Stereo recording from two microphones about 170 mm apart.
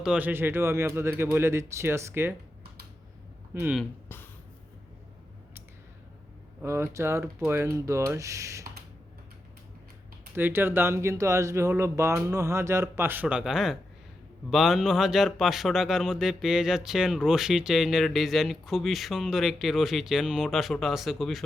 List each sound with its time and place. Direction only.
0.0 s speech: 5° right (ahead or behind)
3.5 s speech: 15° right (ahead or behind)
6.6 s speech: 15° right (ahead or behind)
10.3 s speech: 10° right (ahead or behind)